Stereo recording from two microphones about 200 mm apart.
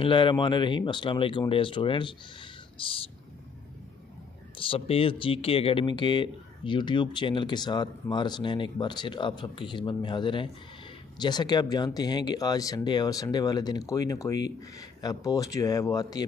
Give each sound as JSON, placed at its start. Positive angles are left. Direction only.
{"t": 0.0, "sound": "speech", "side_deg": 25}
{"t": 4.6, "sound": "speech", "side_deg": 30}